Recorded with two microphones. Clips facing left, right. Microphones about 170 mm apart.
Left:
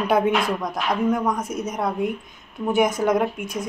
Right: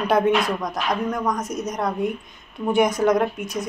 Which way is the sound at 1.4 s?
55° left (ahead or behind).